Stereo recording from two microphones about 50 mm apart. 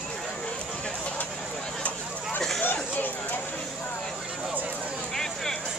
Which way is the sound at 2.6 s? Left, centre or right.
Left.